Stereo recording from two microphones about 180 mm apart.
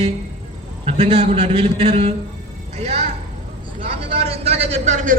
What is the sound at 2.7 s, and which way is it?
Music, 35° right (ahead or behind).